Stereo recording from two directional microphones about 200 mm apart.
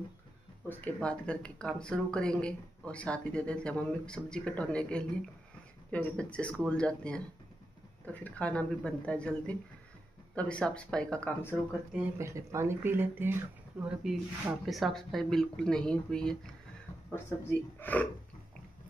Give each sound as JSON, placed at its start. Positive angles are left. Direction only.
{"t": 0.7, "sound": "speech", "side_deg": 10}
{"t": 11.9, "sound": "speech", "side_deg": -15}